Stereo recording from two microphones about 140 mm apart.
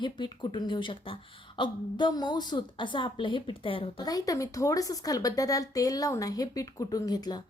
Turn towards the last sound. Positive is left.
turn(degrees=30)  # may be behind; listen again after turning